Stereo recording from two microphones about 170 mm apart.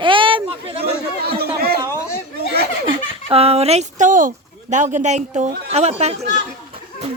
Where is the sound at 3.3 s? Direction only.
35° right (ahead or behind).